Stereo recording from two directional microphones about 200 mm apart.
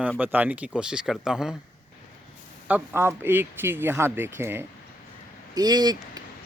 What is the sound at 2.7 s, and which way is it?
Speech, 10° right (ahead or behind).